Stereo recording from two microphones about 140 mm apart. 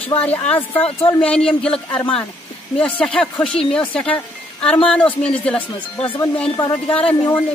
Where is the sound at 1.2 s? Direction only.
5° left (ahead or behind).